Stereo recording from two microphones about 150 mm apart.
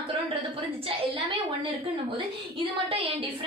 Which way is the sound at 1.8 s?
35° right (ahead or behind).